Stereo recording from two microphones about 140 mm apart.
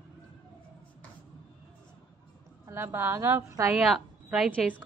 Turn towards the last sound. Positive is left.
turn(degrees=-10)  # may be behind; listen again after turning